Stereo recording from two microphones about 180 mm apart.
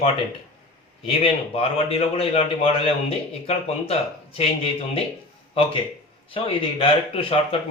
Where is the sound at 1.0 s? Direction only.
30° left (ahead or behind).